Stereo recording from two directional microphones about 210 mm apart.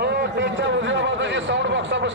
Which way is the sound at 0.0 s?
55° right (ahead or behind).